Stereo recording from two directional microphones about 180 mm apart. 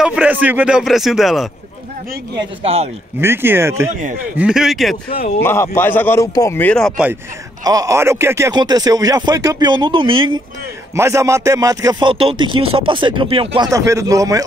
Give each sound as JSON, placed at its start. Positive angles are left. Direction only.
{"t": 0.0, "sound": "speech", "side_deg": -5}
{"t": 2.3, "sound": "speech", "side_deg": -35}
{"t": 3.2, "sound": "speech", "side_deg": -15}
{"t": 4.4, "sound": "speech", "side_deg": -5}
{"t": 5.4, "sound": "a man's voice", "side_deg": 15}
{"t": 7.6, "sound": "speech", "side_deg": -20}
{"t": 11.0, "sound": "speech", "side_deg": -15}
{"t": 13.7, "sound": "speech", "side_deg": -15}